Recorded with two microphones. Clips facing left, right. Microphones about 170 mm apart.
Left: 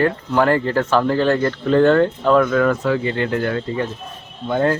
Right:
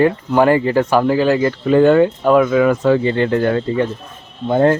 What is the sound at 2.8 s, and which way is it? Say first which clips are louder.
Speech: right 5 dB; 30° right (ahead or behind).